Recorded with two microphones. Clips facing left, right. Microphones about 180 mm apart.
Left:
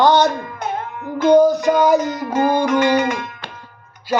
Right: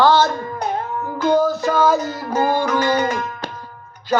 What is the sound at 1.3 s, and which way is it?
Music, 15° left (ahead or behind).